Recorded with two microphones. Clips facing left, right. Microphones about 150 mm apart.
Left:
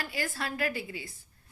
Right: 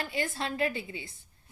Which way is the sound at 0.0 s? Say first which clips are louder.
Right 2 dB; 25° right (ahead or behind).